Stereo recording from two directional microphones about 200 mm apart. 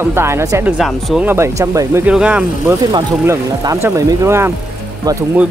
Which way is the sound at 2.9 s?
20° right (ahead or behind).